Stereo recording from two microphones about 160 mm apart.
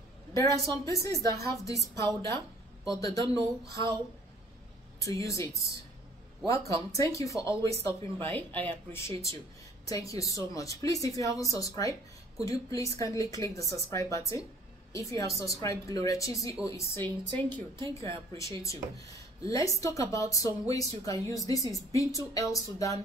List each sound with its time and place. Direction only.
0.3 s speech: 20° left (ahead or behind)
5.0 s speech: 20° left (ahead or behind)